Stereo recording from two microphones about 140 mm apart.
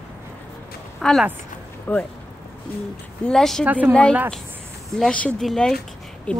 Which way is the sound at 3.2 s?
5° left (ahead or behind).